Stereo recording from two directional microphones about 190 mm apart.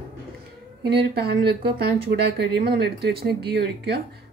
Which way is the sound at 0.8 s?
60° right (ahead or behind).